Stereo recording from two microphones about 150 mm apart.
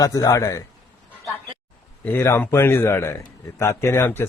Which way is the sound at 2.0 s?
15° left (ahead or behind).